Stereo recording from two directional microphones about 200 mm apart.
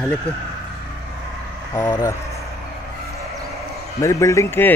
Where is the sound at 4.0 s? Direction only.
15° left (ahead or behind).